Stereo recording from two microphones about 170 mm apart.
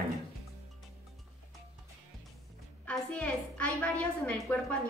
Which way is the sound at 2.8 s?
10° left (ahead or behind).